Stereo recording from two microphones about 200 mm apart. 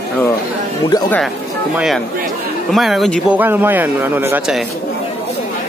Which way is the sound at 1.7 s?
Centre (ahead or behind).